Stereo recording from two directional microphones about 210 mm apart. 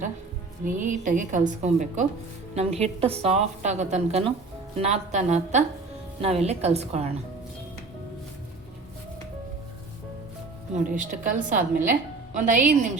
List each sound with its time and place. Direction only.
0.6 s a woman's voice: 40° right (ahead or behind)
10.8 s a woman's voice: 40° right (ahead or behind)